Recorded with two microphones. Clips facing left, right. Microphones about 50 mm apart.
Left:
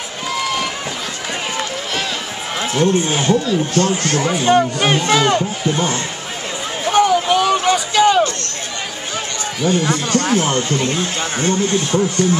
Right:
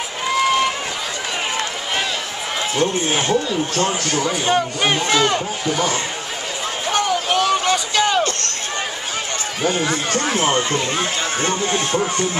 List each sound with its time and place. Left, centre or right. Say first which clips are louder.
3.1 s speech: left 2 dB; centre
3.7 s speech: left 3 dB; right
4.5 s speech: left 5 dB; centre
5.7 s speech: left 1 dB; left
6.9 s a sound: left 6 dB; centre
9.6 s speech: left 3 dB; right